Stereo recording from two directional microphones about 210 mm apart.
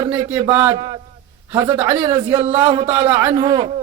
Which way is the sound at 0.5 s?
10° right (ahead or behind).